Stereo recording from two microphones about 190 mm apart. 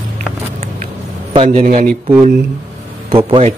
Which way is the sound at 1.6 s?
45° right (ahead or behind).